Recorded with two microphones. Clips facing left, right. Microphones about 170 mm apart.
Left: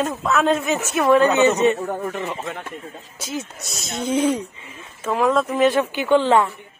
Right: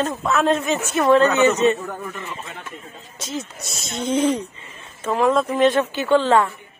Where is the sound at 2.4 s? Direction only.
55° left (ahead or behind).